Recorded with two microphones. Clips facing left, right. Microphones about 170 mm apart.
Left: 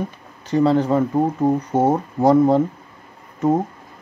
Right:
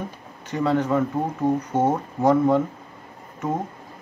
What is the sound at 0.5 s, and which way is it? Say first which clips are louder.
Speech: left 5 dB; 30° left (ahead or behind).